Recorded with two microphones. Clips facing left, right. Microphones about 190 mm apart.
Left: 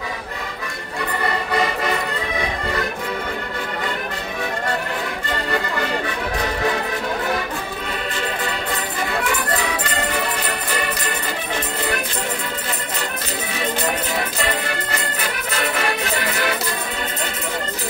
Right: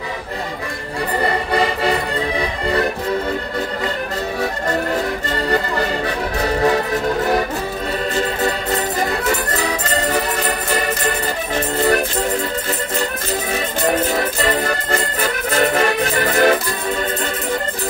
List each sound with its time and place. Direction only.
1.8 s music: 30° right (ahead or behind)
8.4 s music: 40° right (ahead or behind)
13.8 s music: 40° right (ahead or behind)